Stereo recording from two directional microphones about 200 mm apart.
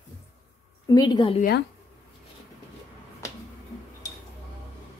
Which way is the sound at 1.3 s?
50° left (ahead or behind).